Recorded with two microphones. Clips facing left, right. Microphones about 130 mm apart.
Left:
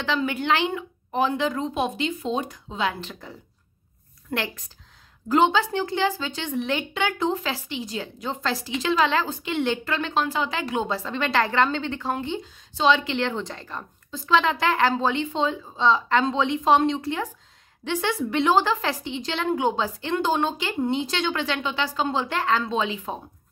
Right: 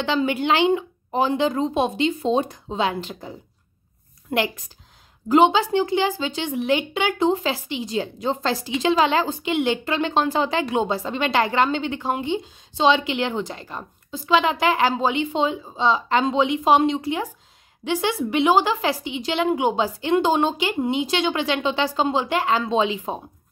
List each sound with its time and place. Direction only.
0.1 s speech: 25° right (ahead or behind)
3.0 s a woman's voice: 20° right (ahead or behind)